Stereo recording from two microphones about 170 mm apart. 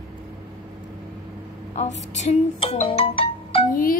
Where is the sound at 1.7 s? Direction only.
45° left (ahead or behind).